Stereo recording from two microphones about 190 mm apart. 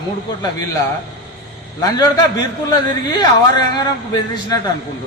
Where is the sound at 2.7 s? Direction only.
20° left (ahead or behind).